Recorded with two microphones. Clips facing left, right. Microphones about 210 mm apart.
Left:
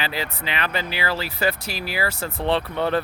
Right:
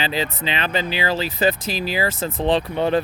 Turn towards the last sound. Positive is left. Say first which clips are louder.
# right 3 dB
turn(degrees=-15)  # may be behind; listen again after turning